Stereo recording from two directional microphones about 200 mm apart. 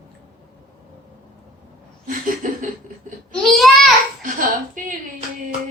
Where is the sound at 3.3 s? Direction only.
Centre (ahead or behind).